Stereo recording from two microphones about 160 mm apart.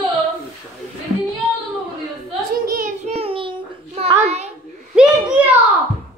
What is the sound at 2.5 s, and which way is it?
Child singing, 60° right (ahead or behind).